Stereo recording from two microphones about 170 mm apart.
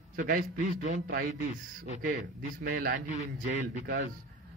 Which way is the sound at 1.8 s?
60° right (ahead or behind).